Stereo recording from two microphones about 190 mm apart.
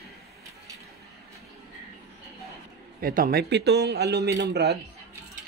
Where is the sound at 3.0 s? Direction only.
50° right (ahead or behind).